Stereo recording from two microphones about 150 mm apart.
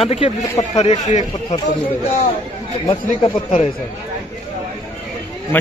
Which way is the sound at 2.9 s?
35° left (ahead or behind).